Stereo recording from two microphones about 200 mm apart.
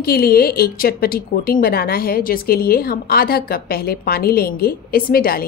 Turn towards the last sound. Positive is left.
turn(degrees=50)  # may be behind; listen again after turning